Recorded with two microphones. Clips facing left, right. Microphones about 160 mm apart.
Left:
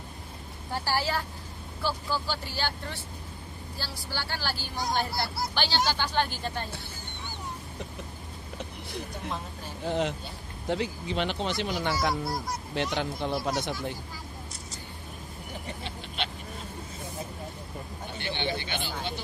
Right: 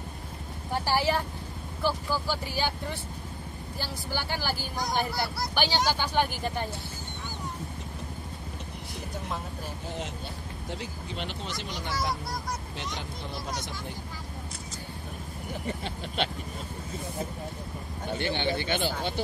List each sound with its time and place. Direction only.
0.8 s speech: 15° right (ahead or behind)
9.8 s speech: 70° left (ahead or behind)
10.7 s speech: 80° left
18.1 s speech: 45° right (ahead or behind)